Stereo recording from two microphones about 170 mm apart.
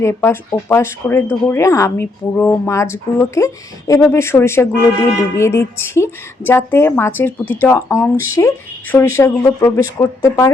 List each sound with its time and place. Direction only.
0.0 s speech: 15° left (ahead or behind)